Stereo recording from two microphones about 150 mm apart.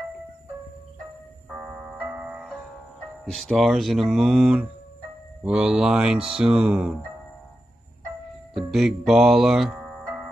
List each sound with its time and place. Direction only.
1.6 s music: 10° right (ahead or behind)
3.3 s mantra: centre (ahead or behind)
8.5 s music: centre (ahead or behind)